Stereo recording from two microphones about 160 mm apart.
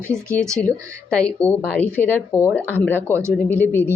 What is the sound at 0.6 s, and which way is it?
Speech, 5° left (ahead or behind).